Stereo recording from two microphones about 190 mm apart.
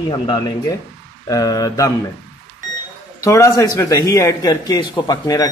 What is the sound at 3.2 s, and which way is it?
Speech, 15° left (ahead or behind).